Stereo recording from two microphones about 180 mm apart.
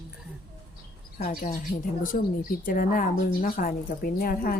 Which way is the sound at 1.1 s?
50° left (ahead or behind).